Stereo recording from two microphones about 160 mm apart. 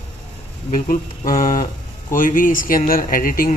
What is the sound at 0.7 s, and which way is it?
Speech, 55° left (ahead or behind).